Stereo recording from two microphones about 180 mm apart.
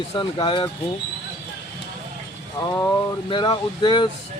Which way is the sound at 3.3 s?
25° left (ahead or behind).